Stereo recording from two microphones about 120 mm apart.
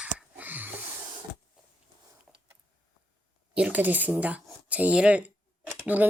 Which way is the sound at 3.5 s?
10° right (ahead or behind).